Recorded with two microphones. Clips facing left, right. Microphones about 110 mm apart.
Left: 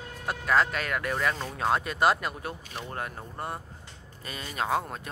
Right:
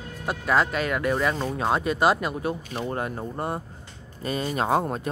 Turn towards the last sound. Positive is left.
turn(degrees=-30)  # may be behind; listen again after turning